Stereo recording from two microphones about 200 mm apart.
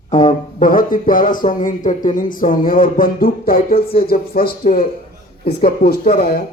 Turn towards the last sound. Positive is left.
turn(degrees=50)  # may be behind; listen again after turning